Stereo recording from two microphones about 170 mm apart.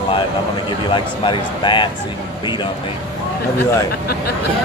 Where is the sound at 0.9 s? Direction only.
30° left (ahead or behind).